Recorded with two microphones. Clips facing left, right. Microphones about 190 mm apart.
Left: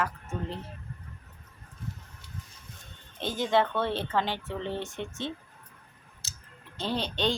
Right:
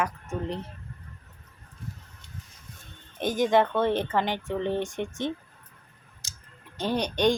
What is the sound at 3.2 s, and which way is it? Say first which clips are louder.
Speech: right 4 dB; 15° right (ahead or behind).